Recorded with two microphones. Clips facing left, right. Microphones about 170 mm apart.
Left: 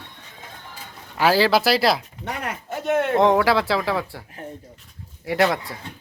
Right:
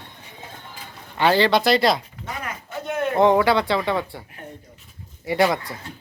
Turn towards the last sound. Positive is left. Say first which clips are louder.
# even
turn(degrees=0)  # may be behind; listen again after turning